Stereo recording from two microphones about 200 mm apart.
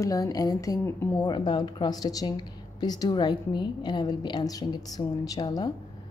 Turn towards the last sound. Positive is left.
turn(degrees=20)  # may be behind; listen again after turning